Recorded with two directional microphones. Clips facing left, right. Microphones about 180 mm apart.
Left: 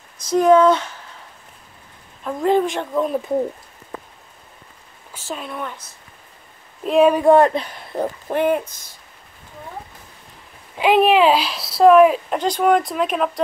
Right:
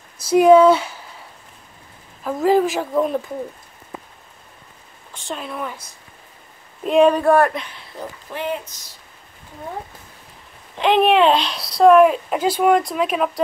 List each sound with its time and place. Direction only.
0.2 s speech: 10° right (ahead or behind)
2.2 s speech: 5° right (ahead or behind)
5.1 s speech: 5° left (ahead or behind)
7.2 s speech: 20° left (ahead or behind)
7.5 s speech: 40° left (ahead or behind)
7.9 s speech: 55° left (ahead or behind)
10.8 s speech: 5° left (ahead or behind)